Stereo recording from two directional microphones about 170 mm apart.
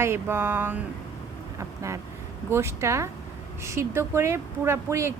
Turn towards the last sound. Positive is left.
turn(degrees=-15)  # may be behind; listen again after turning